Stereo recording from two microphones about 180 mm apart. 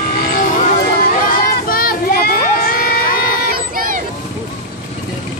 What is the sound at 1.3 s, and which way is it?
Crowd, 55° left (ahead or behind).